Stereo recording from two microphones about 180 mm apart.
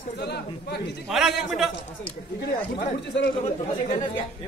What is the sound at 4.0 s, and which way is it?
Speech, 25° left (ahead or behind).